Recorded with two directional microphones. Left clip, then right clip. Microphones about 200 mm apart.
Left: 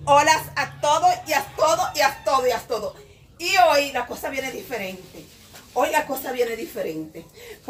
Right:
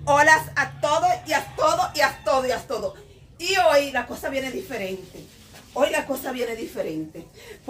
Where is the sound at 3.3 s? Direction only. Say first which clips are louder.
Left 1 dB; 25° right (ahead or behind).